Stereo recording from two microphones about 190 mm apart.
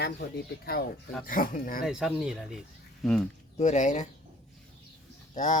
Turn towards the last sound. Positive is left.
turn(degrees=40)  # may be behind; listen again after turning